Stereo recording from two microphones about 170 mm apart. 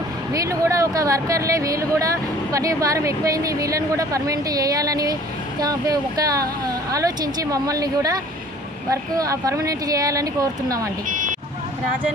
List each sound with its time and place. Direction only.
0.3 s speech: 20° right (ahead or behind)
11.1 s vehicle: 50° right (ahead or behind)